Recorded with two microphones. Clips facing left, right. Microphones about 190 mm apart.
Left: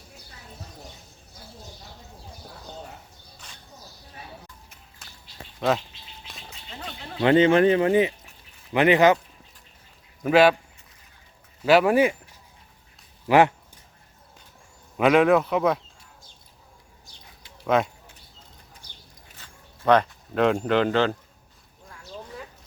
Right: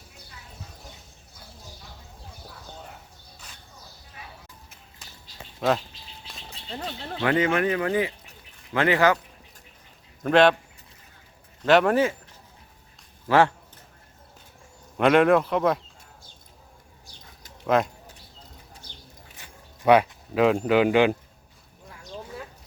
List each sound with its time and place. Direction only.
5.5 s speech: centre (ahead or behind)
6.5 s a sound: 30° right (ahead or behind)
7.2 s speech: 25° left (ahead or behind)
10.2 s speech: 5° left (ahead or behind)
11.6 s speech: 5° left (ahead or behind)
13.2 s a man's voice: 15° left (ahead or behind)
14.9 s speech: centre (ahead or behind)
17.7 s speech: centre (ahead or behind)
19.4 s speech: 10° right (ahead or behind)